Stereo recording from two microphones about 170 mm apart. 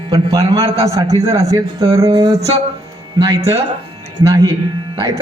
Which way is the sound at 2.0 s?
20° right (ahead or behind).